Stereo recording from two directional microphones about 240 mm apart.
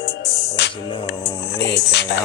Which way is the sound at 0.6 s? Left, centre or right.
Left.